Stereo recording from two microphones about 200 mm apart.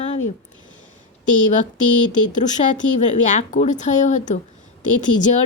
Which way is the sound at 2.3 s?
35° left (ahead or behind).